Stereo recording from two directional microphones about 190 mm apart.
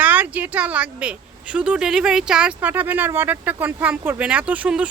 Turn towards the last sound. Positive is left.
turn(degrees=-5)  # may be behind; listen again after turning